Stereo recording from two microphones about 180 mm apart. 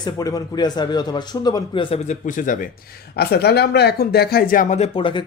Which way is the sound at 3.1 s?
60° left (ahead or behind).